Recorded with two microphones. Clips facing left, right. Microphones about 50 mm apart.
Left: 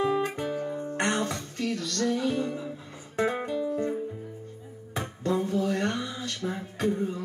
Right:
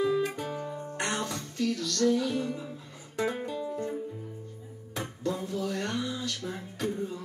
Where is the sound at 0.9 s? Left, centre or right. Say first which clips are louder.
Left 4 dB; left.